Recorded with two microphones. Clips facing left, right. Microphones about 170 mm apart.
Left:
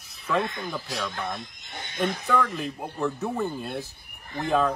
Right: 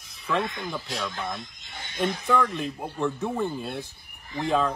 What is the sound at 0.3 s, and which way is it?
Speech, 5° right (ahead or behind).